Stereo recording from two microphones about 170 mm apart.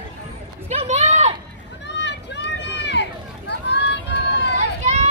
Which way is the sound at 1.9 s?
90° left.